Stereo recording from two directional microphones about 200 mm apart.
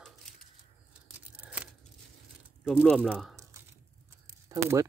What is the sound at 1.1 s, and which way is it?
Tearing, 5° right (ahead or behind).